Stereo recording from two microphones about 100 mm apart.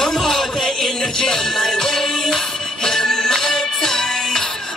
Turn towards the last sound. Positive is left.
turn(degrees=5)  # may be behind; listen again after turning